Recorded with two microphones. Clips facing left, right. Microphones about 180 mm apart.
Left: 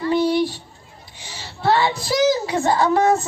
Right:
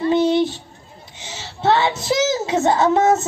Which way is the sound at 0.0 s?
20° right (ahead or behind).